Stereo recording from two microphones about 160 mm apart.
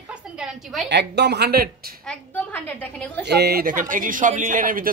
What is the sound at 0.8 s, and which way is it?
Speech, 90° right.